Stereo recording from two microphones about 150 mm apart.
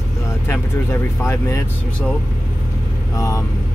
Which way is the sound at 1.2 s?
20° left (ahead or behind).